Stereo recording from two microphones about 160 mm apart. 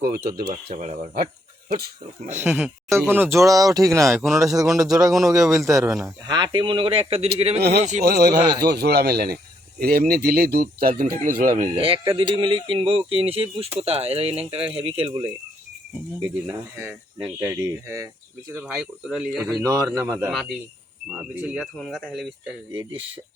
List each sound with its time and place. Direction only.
0.0 s speech: 75° right (ahead or behind)
0.7 s speech: 45° right (ahead or behind)
2.4 s speech: 5° right (ahead or behind); by 8.0 s 45° right (ahead or behind)
8.0 s speech: 90° right; by 11.7 s 60° right (ahead or behind)
11.7 s speech: 35° right (ahead or behind)
17.4 s speech: 15° right (ahead or behind)
18.5 s speech: 5° right (ahead or behind)
19.6 s speech: 20° right (ahead or behind)
21.2 s speech: 5° right (ahead or behind)